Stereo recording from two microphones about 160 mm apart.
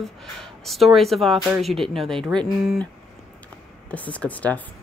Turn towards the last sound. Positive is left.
turn(degrees=10)  # may be behind; listen again after turning